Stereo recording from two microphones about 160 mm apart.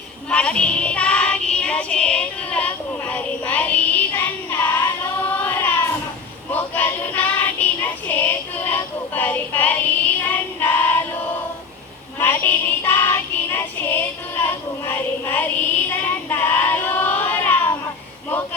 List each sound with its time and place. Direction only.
0.3 s music: 5° left (ahead or behind)
5.4 s child singing: 10° left (ahead or behind)
6.5 s female singing: 10° left (ahead or behind)
12.2 s music: 10° left (ahead or behind)